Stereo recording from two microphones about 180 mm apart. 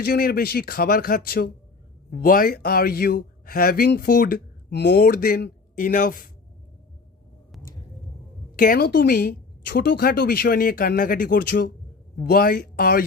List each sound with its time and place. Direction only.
0.0 s speech: 60° left (ahead or behind)
7.5 s a sound: centre (ahead or behind)
8.5 s speech: 50° left (ahead or behind)